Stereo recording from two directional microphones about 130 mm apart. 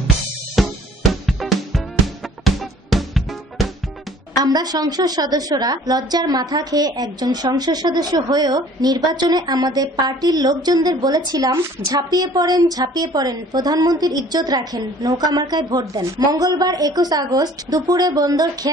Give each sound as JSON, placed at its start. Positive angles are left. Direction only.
{"t": 0.6, "sound": "music", "side_deg": 0}
{"t": 4.5, "sound": "a woman's voice", "side_deg": -30}